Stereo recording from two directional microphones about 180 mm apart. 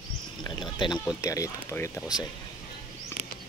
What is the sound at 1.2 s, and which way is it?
Speech, 15° left (ahead or behind).